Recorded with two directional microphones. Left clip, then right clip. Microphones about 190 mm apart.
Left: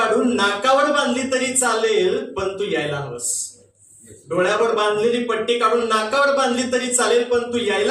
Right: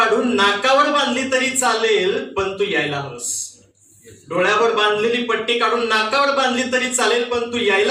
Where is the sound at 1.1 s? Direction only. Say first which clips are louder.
Right 2 dB; 15° left (ahead or behind).